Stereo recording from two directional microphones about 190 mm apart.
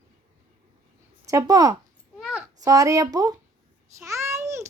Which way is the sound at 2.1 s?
5° right (ahead or behind).